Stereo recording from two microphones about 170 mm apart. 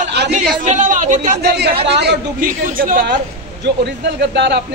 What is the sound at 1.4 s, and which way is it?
Speech, 70° right (ahead or behind).